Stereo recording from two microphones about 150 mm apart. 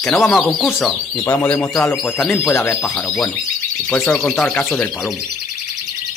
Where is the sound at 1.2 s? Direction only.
15° left (ahead or behind).